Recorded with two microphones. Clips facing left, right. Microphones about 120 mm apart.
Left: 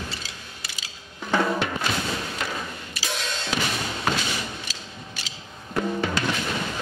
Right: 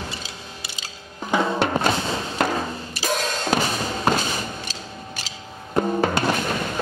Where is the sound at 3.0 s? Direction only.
45° right (ahead or behind).